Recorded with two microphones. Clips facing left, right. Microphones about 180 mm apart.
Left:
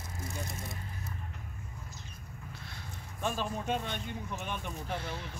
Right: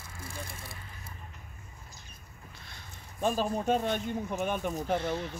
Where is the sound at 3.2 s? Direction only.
35° right (ahead or behind).